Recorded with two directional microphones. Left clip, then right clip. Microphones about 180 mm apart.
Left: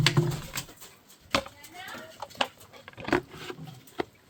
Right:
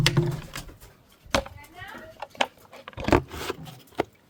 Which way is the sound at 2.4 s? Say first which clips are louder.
Right 3 dB; 50° right (ahead or behind).